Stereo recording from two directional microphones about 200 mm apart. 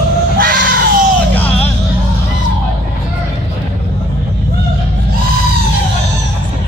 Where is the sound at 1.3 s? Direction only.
10° left (ahead or behind).